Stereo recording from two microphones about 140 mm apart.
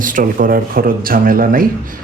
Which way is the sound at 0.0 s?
80° right.